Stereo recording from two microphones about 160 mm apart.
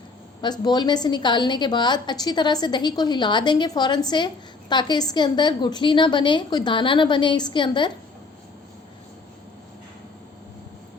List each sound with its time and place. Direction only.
0.4 s a woman's voice: 25° left (ahead or behind)